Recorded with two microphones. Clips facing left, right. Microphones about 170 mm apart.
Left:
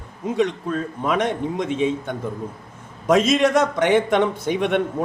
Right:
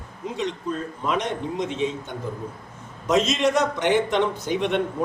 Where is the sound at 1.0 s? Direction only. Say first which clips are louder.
Left 4 dB; 55° left (ahead or behind).